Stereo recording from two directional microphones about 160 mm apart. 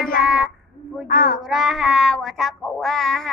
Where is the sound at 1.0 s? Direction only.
65° left (ahead or behind).